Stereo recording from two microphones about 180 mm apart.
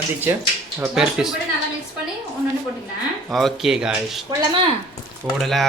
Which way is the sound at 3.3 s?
Centre (ahead or behind).